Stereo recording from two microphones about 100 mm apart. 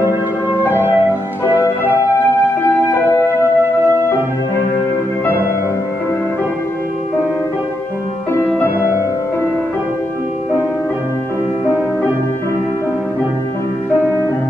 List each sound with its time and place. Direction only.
0.0 s music: 20° right (ahead or behind)
2.6 s music: 30° left (ahead or behind)